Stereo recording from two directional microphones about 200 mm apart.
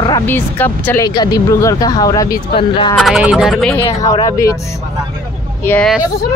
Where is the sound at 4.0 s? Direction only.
15° left (ahead or behind).